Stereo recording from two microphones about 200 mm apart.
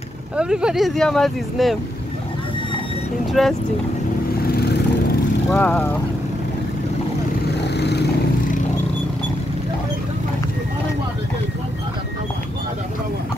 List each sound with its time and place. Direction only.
0.4 s speech: 5° right (ahead or behind)
3.4 s speech: centre (ahead or behind)
4.4 s lawn mower: 50° left (ahead or behind)
5.5 s speech: 10° left (ahead or behind)
7.5 s vehicle: 55° left (ahead or behind)